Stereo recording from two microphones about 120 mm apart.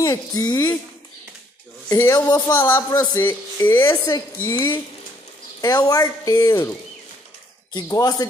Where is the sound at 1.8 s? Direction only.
30° left (ahead or behind).